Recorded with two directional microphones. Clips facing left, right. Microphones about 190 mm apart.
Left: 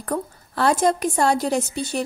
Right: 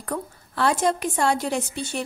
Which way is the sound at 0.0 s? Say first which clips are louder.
Left 4 dB; 40° left (ahead or behind).